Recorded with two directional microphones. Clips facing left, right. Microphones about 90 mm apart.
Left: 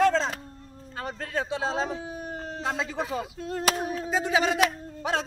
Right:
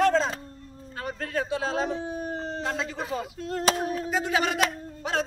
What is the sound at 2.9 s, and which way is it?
A man's voice, 15° left (ahead or behind).